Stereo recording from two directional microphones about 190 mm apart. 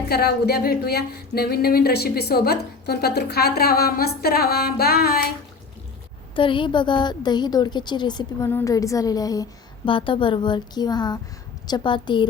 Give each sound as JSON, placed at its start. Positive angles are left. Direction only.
{"t": 0.1, "sound": "a woman's voice", "side_deg": 55}
{"t": 6.3, "sound": "a woman's voice", "side_deg": 25}